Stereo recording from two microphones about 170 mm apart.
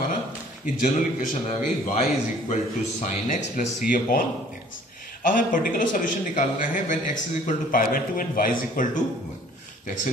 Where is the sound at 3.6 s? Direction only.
50° left (ahead or behind).